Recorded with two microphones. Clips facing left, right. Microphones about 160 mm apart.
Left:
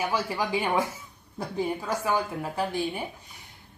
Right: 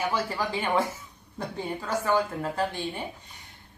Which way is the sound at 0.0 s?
10° left (ahead or behind).